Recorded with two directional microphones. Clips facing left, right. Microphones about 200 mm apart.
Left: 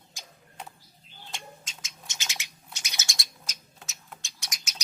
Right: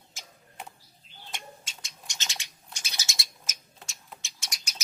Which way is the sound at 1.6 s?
Centre (ahead or behind).